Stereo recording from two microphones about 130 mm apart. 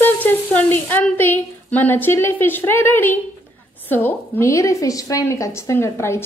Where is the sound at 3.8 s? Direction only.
15° left (ahead or behind).